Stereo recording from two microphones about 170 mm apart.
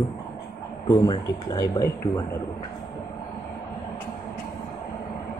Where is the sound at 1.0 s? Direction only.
20° left (ahead or behind).